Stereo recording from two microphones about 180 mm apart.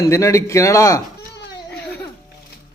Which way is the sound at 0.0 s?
15° left (ahead or behind).